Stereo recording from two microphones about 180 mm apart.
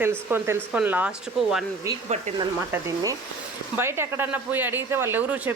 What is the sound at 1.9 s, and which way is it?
Speech, 20° right (ahead or behind).